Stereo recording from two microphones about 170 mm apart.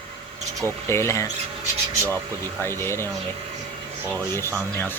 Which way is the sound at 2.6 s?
15° left (ahead or behind).